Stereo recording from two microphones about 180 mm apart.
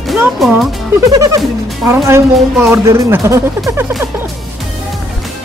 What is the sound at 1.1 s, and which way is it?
Music, 20° right (ahead or behind).